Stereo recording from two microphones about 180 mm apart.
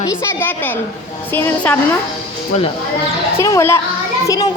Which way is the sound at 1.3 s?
10° left (ahead or behind).